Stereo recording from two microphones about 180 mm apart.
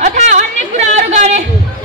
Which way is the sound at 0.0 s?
40° right (ahead or behind).